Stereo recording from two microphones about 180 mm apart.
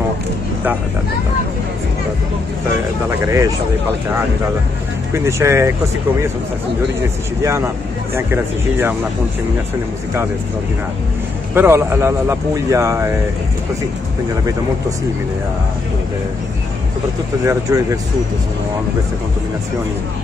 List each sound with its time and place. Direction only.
3.1 s speech: 15° right (ahead or behind)
5.1 s speech: 15° right (ahead or behind)
7.0 s speech: 15° right (ahead or behind)
11.5 s speech: 15° right (ahead or behind)
17.5 s speech: 20° right (ahead or behind)